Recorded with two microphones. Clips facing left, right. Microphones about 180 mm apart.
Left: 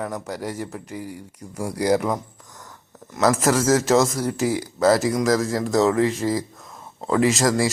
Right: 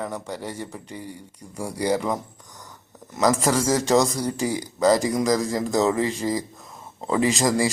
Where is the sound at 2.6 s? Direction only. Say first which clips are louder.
Left 1 dB; centre (ahead or behind).